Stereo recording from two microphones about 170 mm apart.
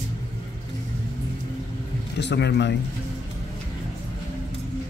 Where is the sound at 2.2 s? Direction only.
90° left.